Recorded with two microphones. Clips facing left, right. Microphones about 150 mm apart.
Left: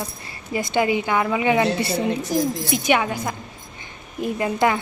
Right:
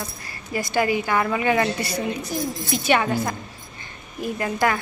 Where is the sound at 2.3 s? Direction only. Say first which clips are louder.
Left 7 dB; 40° left (ahead or behind).